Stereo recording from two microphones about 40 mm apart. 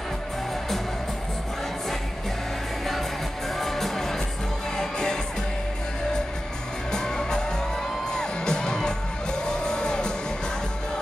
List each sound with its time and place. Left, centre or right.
3.5 s music: centre
6.9 s music: centre